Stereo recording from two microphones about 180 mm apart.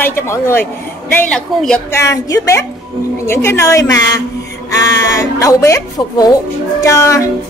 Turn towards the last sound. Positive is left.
turn(degrees=15)  # may be behind; listen again after turning